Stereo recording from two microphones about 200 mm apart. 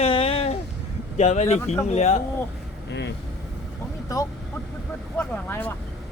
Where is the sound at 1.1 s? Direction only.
35° left (ahead or behind).